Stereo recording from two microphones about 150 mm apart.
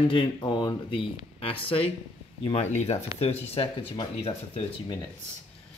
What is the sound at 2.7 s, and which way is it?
Speech, 45° left (ahead or behind).